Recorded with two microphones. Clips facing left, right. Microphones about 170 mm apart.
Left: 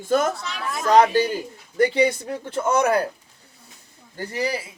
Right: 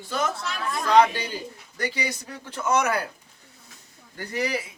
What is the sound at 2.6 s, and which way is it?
Speech, 30° left (ahead or behind).